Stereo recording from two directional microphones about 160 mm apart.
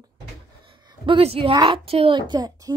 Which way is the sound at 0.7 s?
35° right (ahead or behind).